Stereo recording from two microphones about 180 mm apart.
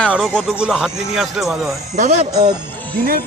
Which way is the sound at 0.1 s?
5° right (ahead or behind).